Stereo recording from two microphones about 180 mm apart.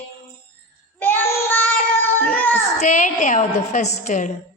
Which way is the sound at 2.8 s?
45° left (ahead or behind).